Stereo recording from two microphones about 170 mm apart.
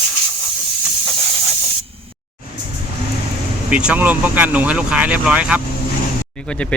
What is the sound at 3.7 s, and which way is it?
Speech, 5° right (ahead or behind).